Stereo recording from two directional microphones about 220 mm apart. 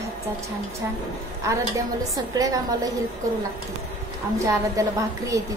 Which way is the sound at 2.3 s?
15° right (ahead or behind).